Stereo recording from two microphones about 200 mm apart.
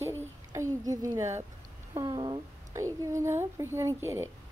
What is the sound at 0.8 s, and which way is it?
A woman's voice, 15° right (ahead or behind).